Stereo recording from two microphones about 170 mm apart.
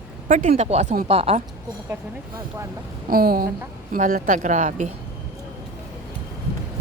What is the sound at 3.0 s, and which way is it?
A woman's voice, 60° right (ahead or behind).